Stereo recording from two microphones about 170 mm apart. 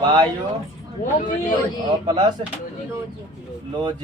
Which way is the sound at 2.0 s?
25° right (ahead or behind).